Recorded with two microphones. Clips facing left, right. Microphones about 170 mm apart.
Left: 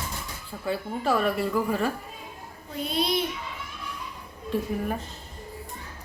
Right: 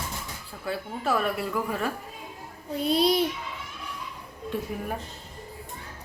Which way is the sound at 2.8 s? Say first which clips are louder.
Right 4 dB; 40° right (ahead or behind).